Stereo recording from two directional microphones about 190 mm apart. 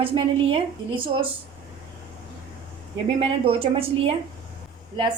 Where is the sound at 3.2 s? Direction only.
30° right (ahead or behind).